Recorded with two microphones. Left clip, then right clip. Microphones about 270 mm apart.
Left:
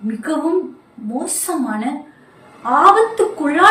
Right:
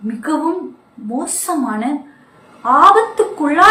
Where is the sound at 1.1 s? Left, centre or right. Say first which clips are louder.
Right 2 dB; centre.